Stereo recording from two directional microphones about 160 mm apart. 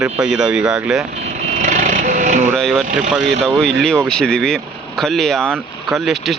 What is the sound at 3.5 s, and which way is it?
Speech, 5° left (ahead or behind).